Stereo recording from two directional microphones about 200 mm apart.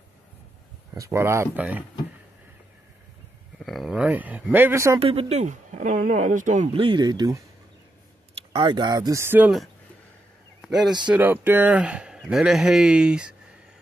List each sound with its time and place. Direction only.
0.9 s speech: 15° right (ahead or behind)
3.5 s speech: centre (ahead or behind)
5.0 s speech: 30° right (ahead or behind); by 9.7 s 5° right (ahead or behind)
11.1 s speech: 10° right (ahead or behind)